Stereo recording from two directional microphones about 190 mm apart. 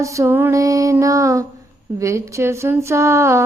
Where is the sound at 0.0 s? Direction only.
15° right (ahead or behind).